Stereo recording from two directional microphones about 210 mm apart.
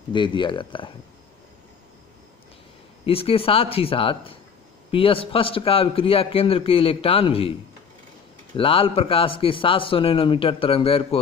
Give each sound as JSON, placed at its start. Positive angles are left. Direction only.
{"t": 0.1, "sound": "a man's voice", "side_deg": 20}
{"t": 3.1, "sound": "a man's voice", "side_deg": 25}
{"t": 8.5, "sound": "a man's voice", "side_deg": 25}